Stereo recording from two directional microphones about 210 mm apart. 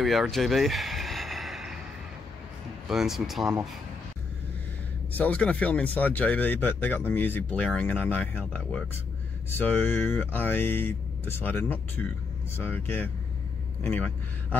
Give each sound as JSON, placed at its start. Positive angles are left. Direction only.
{"t": 0.0, "sound": "a sound", "side_deg": 0}
{"t": 2.9, "sound": "speech", "side_deg": 0}
{"t": 5.2, "sound": "speech", "side_deg": 5}